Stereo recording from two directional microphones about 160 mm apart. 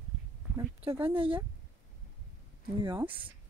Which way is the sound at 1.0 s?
35° right (ahead or behind).